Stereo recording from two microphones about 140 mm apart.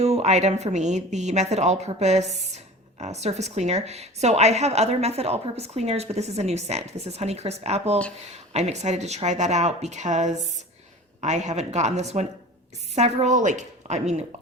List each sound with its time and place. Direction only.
0.0 s a woman's voice: 50° right (ahead or behind)